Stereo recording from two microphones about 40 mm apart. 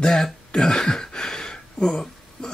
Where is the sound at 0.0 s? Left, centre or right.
Centre.